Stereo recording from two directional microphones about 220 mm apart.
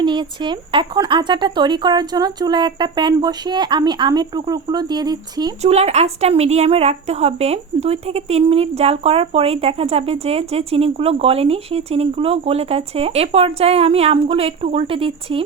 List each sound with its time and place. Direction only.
0.0 s a woman's voice: 20° right (ahead or behind)
5.7 s a woman's voice: 30° right (ahead or behind)